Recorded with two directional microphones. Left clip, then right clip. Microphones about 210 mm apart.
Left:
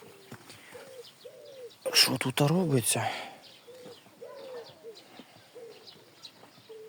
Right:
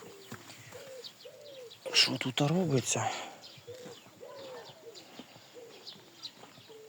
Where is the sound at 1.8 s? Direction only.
40° left (ahead or behind).